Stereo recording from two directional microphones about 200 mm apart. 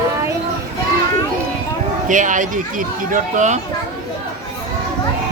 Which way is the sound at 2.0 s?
40° right (ahead or behind).